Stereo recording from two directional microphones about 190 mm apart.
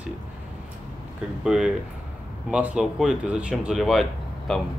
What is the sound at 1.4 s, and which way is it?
Speech, 5° right (ahead or behind).